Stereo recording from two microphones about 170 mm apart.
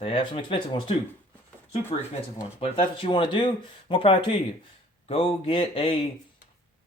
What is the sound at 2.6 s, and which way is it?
Speech, 30° left (ahead or behind).